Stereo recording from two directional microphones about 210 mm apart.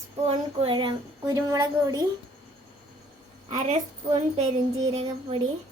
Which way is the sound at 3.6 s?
30° right (ahead or behind).